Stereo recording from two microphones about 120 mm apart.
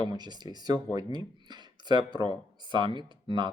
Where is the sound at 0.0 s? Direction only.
35° right (ahead or behind).